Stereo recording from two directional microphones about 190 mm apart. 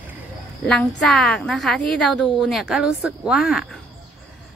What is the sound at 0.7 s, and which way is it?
A woman's voice, 5° left (ahead or behind).